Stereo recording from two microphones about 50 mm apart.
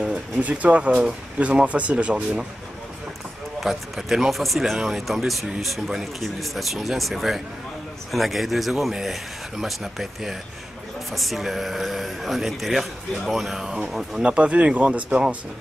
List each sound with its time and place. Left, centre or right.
0.4 s speech: right
3.6 s speech: centre
13.8 s speech: centre